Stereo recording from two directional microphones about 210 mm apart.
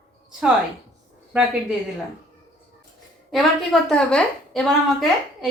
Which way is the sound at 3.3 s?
Centre (ahead or behind).